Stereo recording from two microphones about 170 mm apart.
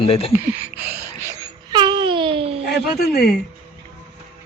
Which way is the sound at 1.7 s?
25° right (ahead or behind).